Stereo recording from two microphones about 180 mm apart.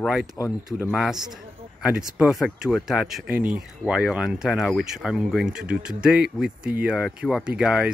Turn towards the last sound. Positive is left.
turn(degrees=-5)  # may be behind; listen again after turning